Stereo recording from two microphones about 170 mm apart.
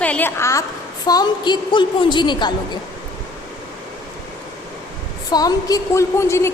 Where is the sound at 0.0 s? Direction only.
10° left (ahead or behind); by 2.5 s 25° left (ahead or behind).